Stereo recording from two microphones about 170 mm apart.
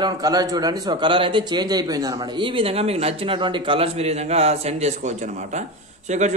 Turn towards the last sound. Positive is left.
turn(degrees=-45)  # may be behind; listen again after turning